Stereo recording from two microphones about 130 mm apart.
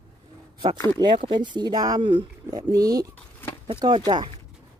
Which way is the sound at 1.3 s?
35° right (ahead or behind).